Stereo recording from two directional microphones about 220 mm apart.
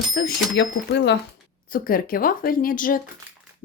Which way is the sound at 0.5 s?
50° left (ahead or behind).